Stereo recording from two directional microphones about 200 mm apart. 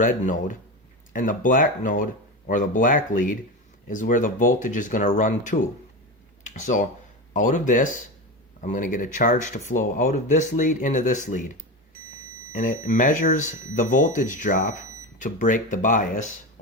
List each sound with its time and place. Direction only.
0.0 s speech: 40° left (ahead or behind)
6.4 s a sound: 40° left (ahead or behind)
7.3 s speech: 40° left (ahead or behind)